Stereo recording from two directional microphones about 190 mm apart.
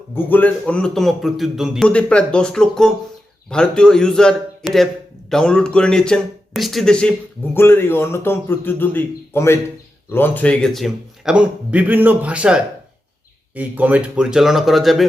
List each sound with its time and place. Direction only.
0.1 s a man's voice: 10° left (ahead or behind)